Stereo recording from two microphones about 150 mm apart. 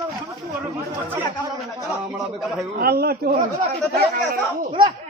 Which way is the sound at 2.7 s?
90° right.